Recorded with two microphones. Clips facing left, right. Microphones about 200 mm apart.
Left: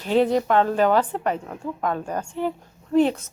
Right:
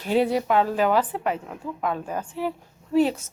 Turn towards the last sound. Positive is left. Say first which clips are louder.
# left 2 dB
turn(degrees=-5)  # may be behind; listen again after turning